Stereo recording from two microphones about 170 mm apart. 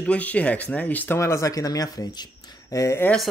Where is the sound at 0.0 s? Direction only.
10° left (ahead or behind).